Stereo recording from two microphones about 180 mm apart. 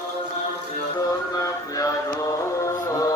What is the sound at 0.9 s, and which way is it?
Music, 20° left (ahead or behind).